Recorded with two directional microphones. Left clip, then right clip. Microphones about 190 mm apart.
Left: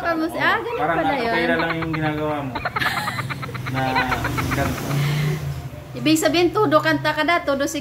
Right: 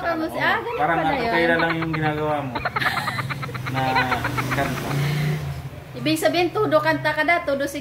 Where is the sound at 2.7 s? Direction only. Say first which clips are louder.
Left 1 dB; 10° left (ahead or behind).